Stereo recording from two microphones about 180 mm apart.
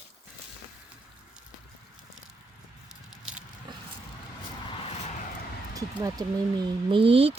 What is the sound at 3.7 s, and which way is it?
Vehicle, 25° right (ahead or behind).